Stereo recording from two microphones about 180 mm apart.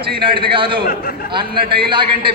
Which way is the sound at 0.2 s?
30° right (ahead or behind).